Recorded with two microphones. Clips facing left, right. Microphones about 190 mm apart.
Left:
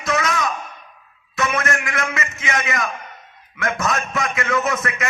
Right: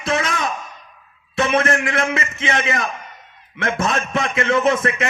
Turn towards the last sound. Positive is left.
turn(degrees=-25)  # may be behind; listen again after turning